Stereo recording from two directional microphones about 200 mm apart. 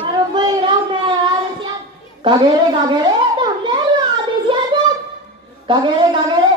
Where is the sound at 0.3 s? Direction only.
25° right (ahead or behind).